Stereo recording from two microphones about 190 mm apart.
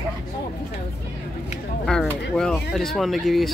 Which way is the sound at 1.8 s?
5° left (ahead or behind).